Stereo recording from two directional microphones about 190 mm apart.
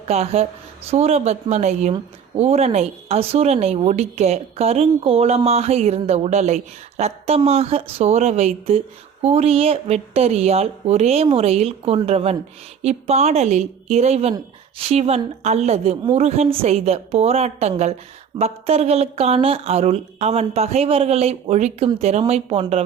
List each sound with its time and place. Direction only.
0.1 s speech: 35° right (ahead or behind)